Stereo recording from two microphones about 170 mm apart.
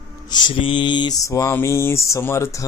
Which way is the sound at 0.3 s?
25° left (ahead or behind).